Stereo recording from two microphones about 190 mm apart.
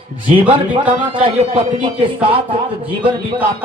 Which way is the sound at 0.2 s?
25° right (ahead or behind).